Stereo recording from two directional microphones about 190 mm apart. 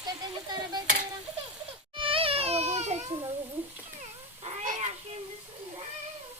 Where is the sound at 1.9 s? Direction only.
30° right (ahead or behind).